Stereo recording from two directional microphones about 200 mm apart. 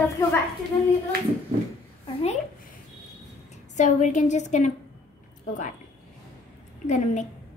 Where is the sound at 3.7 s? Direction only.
35° left (ahead or behind).